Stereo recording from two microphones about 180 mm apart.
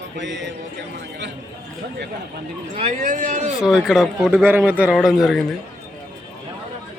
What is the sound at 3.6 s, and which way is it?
Speech, 5° right (ahead or behind).